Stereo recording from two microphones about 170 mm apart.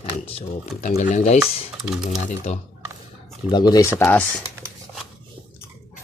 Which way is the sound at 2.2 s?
40° left (ahead or behind).